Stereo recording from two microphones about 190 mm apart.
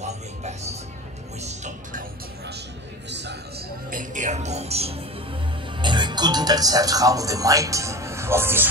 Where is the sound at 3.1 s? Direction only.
65° right (ahead or behind).